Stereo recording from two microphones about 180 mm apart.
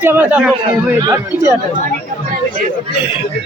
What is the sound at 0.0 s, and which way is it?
Speech, 10° right (ahead or behind).